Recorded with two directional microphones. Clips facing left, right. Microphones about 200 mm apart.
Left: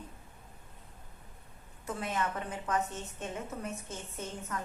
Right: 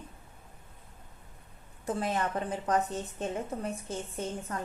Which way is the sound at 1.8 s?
35° right (ahead or behind).